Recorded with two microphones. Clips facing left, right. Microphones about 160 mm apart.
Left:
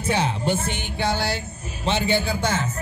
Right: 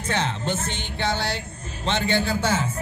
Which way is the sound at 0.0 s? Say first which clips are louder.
Left 3 dB; 10° left (ahead or behind).